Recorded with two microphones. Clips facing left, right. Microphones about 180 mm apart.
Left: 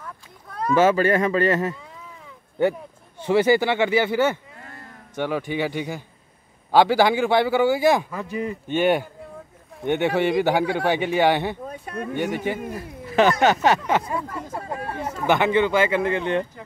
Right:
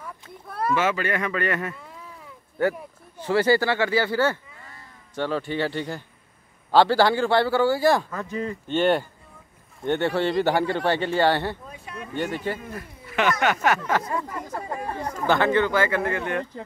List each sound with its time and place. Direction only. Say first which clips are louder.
0.0 s a sound: right 1 dB; 10° right (ahead or behind)
0.7 s speech: left 9 dB; 35° left (ahead or behind)
3.3 s speech: left 2 dB; 15° left (ahead or behind)
4.6 s a sound: left 5 dB; 55° left (ahead or behind)
5.1 s a man's voice: left 1 dB; 15° left (ahead or behind)
11.7 s speech: left 7 dB; 50° left (ahead or behind)
12.7 s speech: left 7 dB; 30° left (ahead or behind)
14.2 s speech: left 1 dB; 10° right (ahead or behind)
14.9 s a man's voice: left 2 dB; 10° left (ahead or behind); by 16.4 s 25° left (ahead or behind)